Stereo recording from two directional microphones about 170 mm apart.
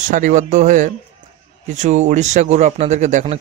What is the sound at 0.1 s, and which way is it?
Speech, 50° right (ahead or behind).